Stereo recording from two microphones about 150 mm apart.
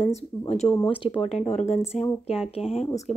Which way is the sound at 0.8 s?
35° left (ahead or behind).